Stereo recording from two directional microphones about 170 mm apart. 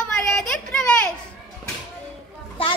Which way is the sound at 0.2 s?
5° left (ahead or behind).